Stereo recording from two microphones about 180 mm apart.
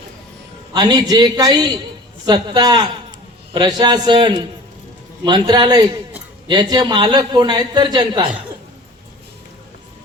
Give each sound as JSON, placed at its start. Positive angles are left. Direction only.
{"t": 0.7, "sound": "a man's voice", "side_deg": -20}